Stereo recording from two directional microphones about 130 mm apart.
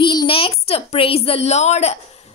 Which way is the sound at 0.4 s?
50° left (ahead or behind).